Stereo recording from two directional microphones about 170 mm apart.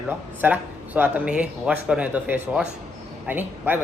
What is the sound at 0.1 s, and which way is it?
Speech, 10° right (ahead or behind).